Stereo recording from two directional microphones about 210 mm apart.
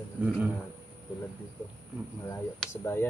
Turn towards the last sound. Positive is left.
turn(degrees=10)  # may be behind; listen again after turning